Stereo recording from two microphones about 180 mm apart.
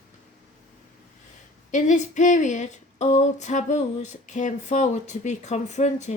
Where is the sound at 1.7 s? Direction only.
45° left (ahead or behind).